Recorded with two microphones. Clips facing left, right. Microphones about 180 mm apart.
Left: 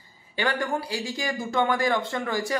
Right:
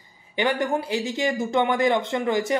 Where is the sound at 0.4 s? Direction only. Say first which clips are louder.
Right 4 dB; 20° right (ahead or behind).